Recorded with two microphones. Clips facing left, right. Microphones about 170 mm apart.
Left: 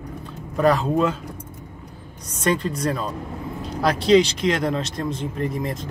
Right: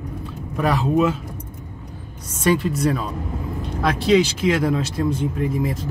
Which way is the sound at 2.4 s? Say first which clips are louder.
Right 3 dB; 5° right (ahead or behind).